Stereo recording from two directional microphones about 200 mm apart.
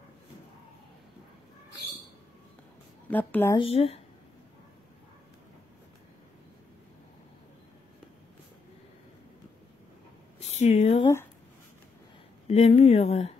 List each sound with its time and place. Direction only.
3.1 s speech: 10° left (ahead or behind)
3.5 s speech: 30° left (ahead or behind)
10.4 s speech: 35° left (ahead or behind)
12.4 s speech: 35° left (ahead or behind)